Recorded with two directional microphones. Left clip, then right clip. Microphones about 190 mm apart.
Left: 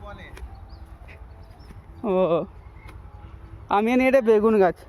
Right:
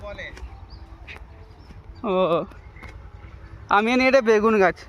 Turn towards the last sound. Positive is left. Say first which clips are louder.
# even
turn(degrees=15)  # may be behind; listen again after turning